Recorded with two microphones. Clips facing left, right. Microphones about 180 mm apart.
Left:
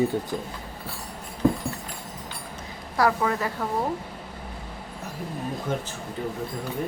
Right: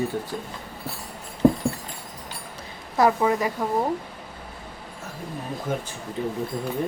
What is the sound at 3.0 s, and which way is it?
Speech, 20° right (ahead or behind).